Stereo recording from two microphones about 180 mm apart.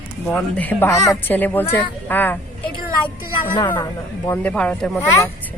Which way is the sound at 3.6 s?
25° left (ahead or behind).